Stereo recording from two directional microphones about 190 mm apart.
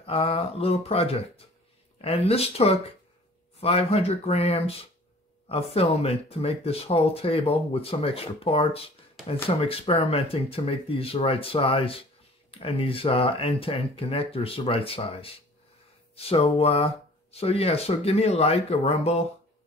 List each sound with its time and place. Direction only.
0.0 s speech: 30° left (ahead or behind)